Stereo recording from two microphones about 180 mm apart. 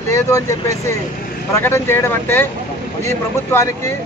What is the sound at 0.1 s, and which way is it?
Speech, 15° left (ahead or behind).